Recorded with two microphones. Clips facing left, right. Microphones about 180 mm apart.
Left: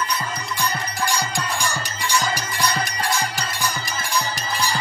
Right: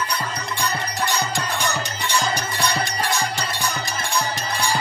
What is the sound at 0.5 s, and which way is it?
Music, 25° right (ahead or behind).